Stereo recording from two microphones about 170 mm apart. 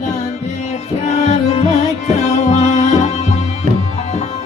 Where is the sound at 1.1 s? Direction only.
40° left (ahead or behind).